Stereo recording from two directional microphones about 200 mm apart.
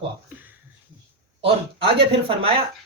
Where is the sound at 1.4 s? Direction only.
25° right (ahead or behind).